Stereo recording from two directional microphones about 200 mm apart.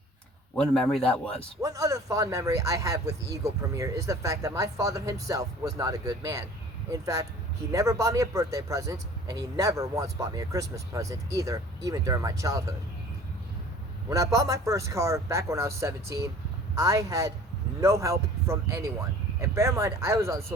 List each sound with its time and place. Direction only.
0.5 s a man's voice: 5° left (ahead or behind)
1.6 s speech: 15° right (ahead or behind)
14.1 s speech: 15° right (ahead or behind)